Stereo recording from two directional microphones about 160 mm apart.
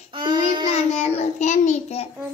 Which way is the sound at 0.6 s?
45° left (ahead or behind).